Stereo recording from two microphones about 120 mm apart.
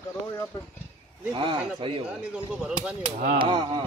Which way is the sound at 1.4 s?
50° right (ahead or behind).